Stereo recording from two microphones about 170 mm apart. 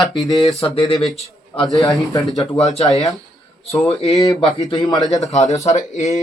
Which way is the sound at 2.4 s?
35° left (ahead or behind).